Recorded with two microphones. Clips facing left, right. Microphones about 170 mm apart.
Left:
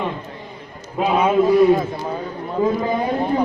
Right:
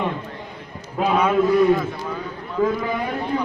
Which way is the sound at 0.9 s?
5° left (ahead or behind).